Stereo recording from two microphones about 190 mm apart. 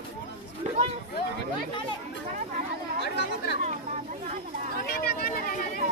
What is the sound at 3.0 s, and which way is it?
Chatter, 60° left (ahead or behind).